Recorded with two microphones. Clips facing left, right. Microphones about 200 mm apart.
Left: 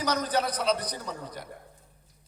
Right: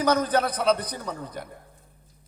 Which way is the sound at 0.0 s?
55° right (ahead or behind).